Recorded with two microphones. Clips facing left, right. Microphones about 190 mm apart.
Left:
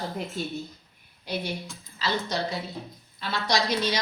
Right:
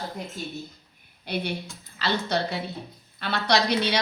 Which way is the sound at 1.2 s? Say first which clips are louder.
Right 2 dB; 60° right (ahead or behind).